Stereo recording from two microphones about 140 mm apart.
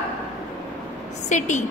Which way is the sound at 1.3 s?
60° left (ahead or behind).